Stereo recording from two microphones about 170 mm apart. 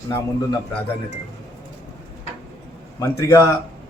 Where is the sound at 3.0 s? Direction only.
15° left (ahead or behind).